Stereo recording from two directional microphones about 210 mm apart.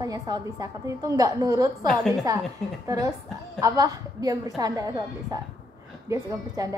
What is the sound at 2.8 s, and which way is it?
A woman's voice, 15° right (ahead or behind).